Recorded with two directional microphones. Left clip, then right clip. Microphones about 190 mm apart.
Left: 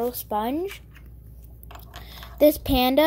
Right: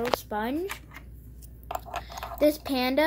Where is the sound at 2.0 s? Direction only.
35° left (ahead or behind).